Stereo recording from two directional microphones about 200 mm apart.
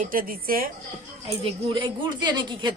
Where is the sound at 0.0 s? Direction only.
45° right (ahead or behind).